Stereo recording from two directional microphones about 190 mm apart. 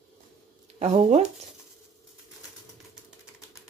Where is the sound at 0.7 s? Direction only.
35° right (ahead or behind).